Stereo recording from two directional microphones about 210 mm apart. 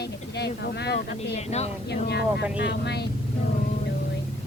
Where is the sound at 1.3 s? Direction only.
30° left (ahead or behind).